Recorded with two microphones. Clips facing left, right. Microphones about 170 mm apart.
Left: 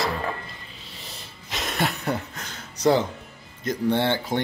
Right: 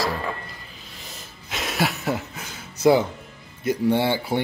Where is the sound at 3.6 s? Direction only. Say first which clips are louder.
Right 2 dB; 10° right (ahead or behind).